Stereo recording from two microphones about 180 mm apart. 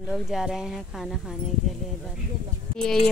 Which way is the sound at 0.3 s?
Centre (ahead or behind).